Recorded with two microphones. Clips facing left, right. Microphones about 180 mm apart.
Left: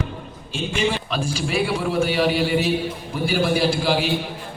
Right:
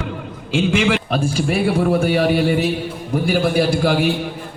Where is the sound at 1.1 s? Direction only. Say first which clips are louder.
Right 5 dB; 50° right (ahead or behind).